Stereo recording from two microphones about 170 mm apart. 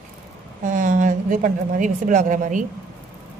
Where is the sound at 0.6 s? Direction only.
50° right (ahead or behind).